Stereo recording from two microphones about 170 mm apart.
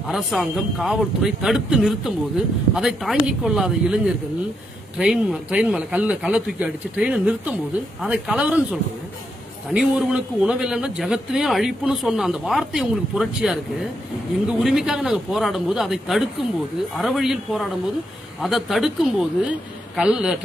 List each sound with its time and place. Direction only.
0.1 s a man's voice: centre (ahead or behind)
9.7 s a man's voice: 5° right (ahead or behind)
14.6 s a man's voice: centre (ahead or behind)